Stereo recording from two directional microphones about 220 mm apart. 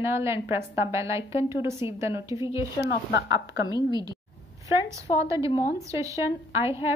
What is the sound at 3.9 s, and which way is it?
Speech, 20° right (ahead or behind).